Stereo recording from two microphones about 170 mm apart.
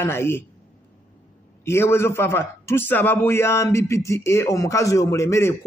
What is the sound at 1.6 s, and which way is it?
A man's voice, 15° left (ahead or behind).